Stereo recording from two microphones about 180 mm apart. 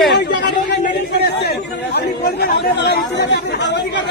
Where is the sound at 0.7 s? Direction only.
65° left (ahead or behind).